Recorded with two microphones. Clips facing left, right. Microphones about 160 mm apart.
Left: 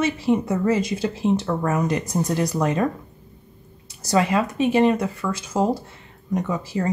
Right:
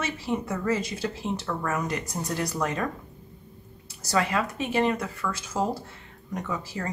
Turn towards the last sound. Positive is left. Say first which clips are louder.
# left 7 dB
turn(degrees=20)  # may be behind; listen again after turning